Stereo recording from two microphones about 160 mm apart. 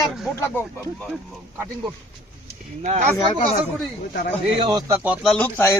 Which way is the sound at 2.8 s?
45° right (ahead or behind).